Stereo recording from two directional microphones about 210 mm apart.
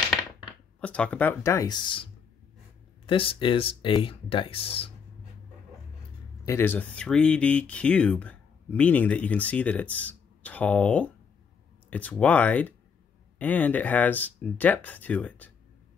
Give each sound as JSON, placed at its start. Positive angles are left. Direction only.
{"t": 0.7, "sound": "speech", "side_deg": 5}
{"t": 3.1, "sound": "speech", "side_deg": 25}
{"t": 6.4, "sound": "speech", "side_deg": 10}